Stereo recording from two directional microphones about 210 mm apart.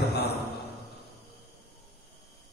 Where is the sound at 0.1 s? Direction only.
50° left (ahead or behind).